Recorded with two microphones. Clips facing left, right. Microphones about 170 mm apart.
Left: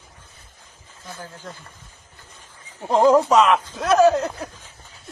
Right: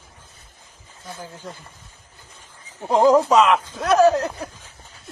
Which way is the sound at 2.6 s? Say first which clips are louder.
Even; 10° right (ahead or behind).